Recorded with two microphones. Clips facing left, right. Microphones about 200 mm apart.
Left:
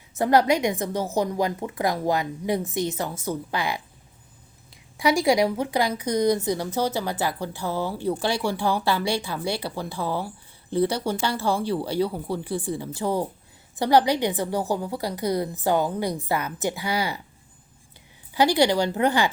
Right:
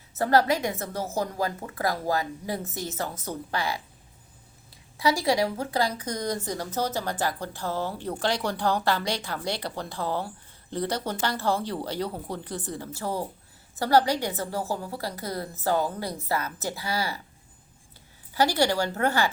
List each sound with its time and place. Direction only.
0.2 s a woman's voice: 15° left (ahead or behind)
4.9 s a woman's voice: 20° left (ahead or behind)
18.3 s a woman's voice: 15° left (ahead or behind)